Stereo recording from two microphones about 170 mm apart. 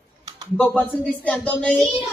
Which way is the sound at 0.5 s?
10° left (ahead or behind).